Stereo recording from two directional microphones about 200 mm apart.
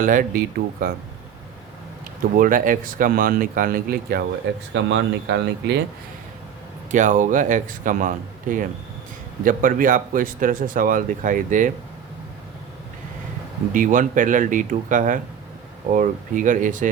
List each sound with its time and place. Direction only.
0.0 s speech: 45° right (ahead or behind)
2.3 s speech: 45° right (ahead or behind)
4.7 s speech: 65° right (ahead or behind)
6.9 s a man's voice: 40° right (ahead or behind)
13.7 s a man's voice: 40° right (ahead or behind)